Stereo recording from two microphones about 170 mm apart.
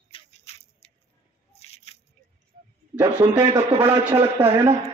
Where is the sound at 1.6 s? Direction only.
40° left (ahead or behind).